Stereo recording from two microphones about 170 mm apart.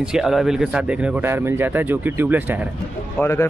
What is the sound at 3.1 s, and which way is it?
Speech, 15° left (ahead or behind).